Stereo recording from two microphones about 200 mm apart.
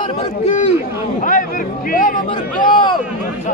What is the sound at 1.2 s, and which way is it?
Speech, 45° left (ahead or behind).